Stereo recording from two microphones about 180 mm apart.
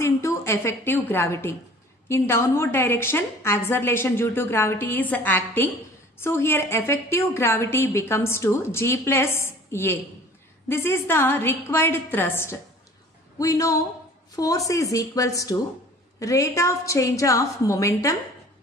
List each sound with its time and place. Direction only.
0.0 s a woman's voice: 15° left (ahead or behind)